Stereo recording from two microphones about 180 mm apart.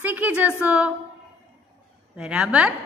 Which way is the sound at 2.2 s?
5° right (ahead or behind).